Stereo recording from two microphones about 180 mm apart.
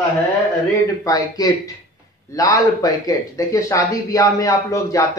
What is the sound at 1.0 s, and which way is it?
A man's voice, 20° left (ahead or behind).